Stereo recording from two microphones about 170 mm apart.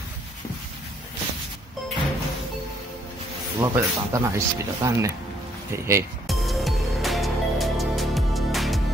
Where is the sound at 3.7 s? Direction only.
20° right (ahead or behind).